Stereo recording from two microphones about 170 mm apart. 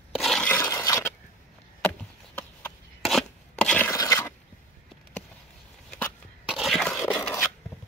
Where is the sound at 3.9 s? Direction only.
20° left (ahead or behind).